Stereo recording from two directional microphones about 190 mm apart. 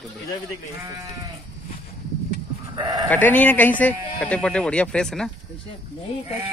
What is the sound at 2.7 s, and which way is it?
Speech, 20° right (ahead or behind).